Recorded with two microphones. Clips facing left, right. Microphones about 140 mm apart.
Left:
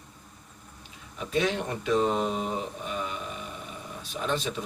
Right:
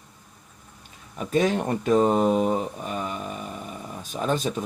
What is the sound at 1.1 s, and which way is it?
Speech, 45° right (ahead or behind).